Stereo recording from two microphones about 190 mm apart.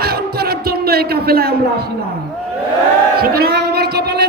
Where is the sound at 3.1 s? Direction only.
55° right (ahead or behind).